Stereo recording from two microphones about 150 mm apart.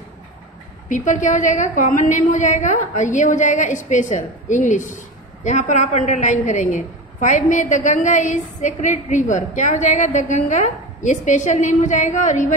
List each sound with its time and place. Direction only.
0.8 s a woman's voice: 55° left (ahead or behind)